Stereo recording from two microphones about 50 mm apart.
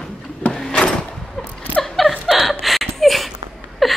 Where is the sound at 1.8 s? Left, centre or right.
Centre.